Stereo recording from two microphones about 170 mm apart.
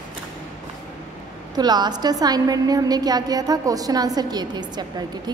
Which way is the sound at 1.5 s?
25° right (ahead or behind).